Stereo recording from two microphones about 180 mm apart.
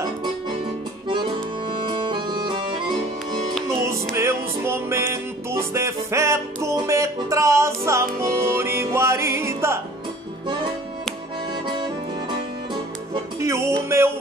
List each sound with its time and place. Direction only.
1.0 s accordion: 25° right (ahead or behind)
3.6 s music: 15° right (ahead or behind)
11.6 s accordion: 25° right (ahead or behind)
13.4 s music: 15° right (ahead or behind)